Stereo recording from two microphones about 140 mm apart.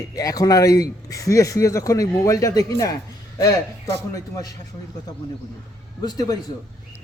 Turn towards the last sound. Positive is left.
turn(degrees=25)  # may be behind; listen again after turning